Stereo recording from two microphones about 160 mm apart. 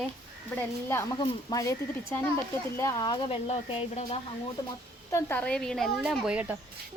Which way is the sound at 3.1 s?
30° left (ahead or behind).